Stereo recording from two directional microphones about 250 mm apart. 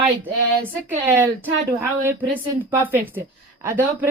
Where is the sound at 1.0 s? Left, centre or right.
Centre.